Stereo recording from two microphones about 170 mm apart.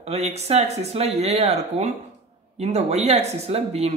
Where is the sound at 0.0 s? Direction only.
40° right (ahead or behind).